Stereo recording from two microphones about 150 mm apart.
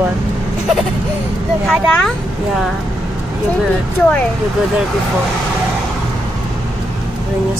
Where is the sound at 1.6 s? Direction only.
Centre (ahead or behind).